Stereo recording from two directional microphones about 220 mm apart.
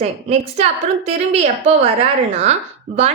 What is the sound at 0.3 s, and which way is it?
A woman's voice, 30° right (ahead or behind).